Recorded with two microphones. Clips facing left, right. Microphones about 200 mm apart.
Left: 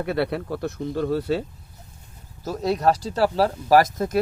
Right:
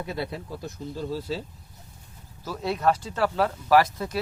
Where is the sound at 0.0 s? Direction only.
65° left (ahead or behind).